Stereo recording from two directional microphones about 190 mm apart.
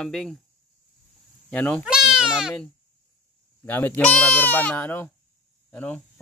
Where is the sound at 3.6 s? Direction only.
10° left (ahead or behind).